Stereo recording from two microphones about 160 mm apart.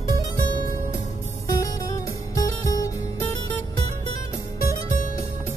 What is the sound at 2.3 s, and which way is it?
Music, 20° left (ahead or behind).